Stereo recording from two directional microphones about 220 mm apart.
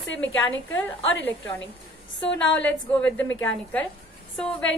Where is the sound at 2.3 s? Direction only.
55° left (ahead or behind).